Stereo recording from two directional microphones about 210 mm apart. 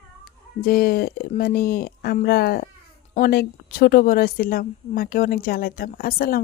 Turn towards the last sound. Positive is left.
turn(degrees=45)  # may be behind; listen again after turning